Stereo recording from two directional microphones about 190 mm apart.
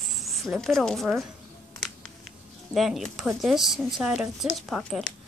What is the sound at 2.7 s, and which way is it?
Speech, centre (ahead or behind).